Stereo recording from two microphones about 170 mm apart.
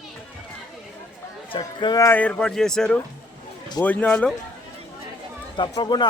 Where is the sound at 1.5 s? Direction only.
25° left (ahead or behind); by 4.4 s 5° left (ahead or behind).